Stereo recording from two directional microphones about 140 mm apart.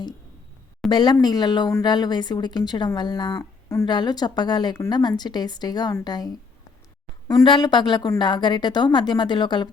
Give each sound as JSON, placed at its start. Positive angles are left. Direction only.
{"t": 0.9, "sound": "a woman's voice", "side_deg": 30}